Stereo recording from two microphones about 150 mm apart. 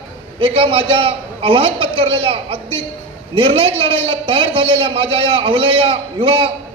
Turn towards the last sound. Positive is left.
turn(degrees=-35)  # may be behind; listen again after turning